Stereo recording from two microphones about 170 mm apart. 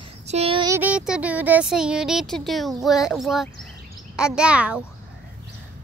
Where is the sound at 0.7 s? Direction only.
10° right (ahead or behind).